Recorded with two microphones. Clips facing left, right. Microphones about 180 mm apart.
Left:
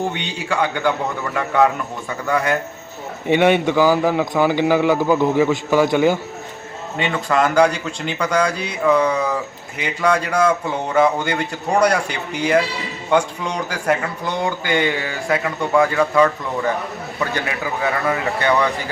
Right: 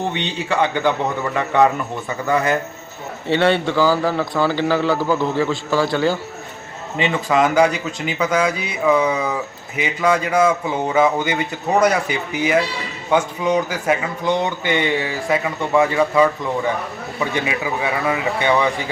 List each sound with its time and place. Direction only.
0.1 s a man's voice: 5° left (ahead or behind)
3.2 s a man's voice: 15° left (ahead or behind)
6.9 s a man's voice: 5° right (ahead or behind)